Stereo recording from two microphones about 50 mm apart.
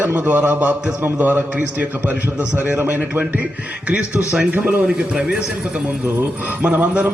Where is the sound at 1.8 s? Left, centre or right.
Right.